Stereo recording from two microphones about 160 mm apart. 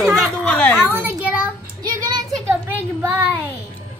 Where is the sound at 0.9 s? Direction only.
15° right (ahead or behind).